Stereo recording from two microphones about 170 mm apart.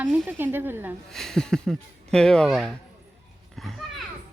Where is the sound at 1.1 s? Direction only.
5° left (ahead or behind).